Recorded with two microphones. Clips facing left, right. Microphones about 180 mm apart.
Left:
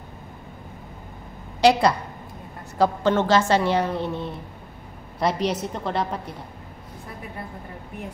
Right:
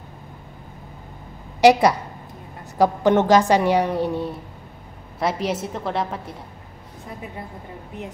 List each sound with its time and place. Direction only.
1.6 s a woman's voice: 15° right (ahead or behind)